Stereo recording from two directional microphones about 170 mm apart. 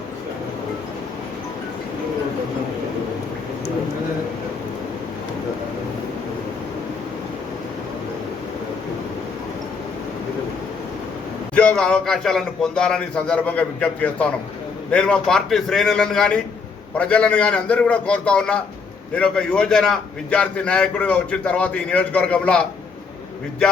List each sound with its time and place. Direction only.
11.5 s a man's voice: 5° left (ahead or behind)